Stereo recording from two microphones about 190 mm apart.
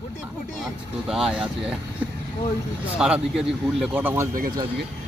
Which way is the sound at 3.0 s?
5° right (ahead or behind).